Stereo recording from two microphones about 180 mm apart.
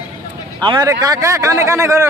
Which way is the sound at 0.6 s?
25° right (ahead or behind).